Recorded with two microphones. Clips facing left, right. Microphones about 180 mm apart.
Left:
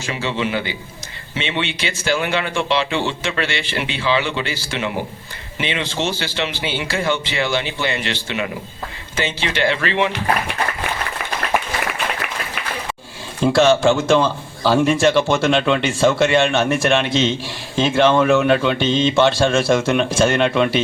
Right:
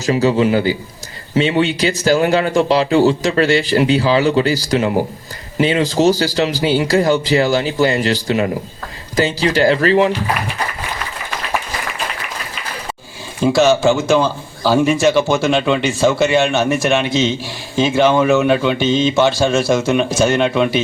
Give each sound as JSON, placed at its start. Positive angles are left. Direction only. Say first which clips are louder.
{"t": 0.0, "sound": "speech", "louder": "right 9 dB", "side_deg": -40}
{"t": 13.4, "sound": "a man's voice", "louder": "right 1 dB", "side_deg": -5}